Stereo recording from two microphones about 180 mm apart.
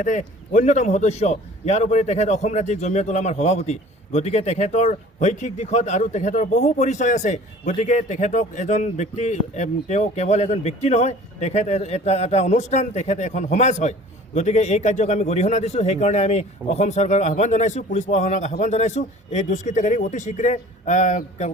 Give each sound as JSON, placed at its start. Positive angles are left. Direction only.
{"t": 0.0, "sound": "a man's voice", "side_deg": 45}